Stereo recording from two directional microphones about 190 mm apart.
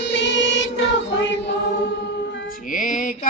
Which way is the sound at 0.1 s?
75° left (ahead or behind).